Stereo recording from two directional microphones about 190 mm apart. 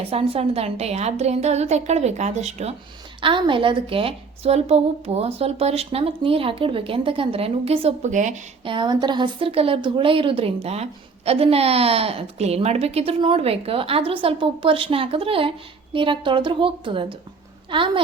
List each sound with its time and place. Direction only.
0.0 s speech: 30° right (ahead or behind)
8.6 s speech: 25° right (ahead or behind)